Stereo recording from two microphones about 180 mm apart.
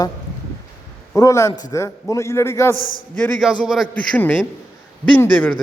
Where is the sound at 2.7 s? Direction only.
50° left (ahead or behind).